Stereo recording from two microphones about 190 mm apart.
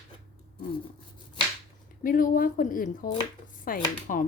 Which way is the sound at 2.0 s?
45° left (ahead or behind).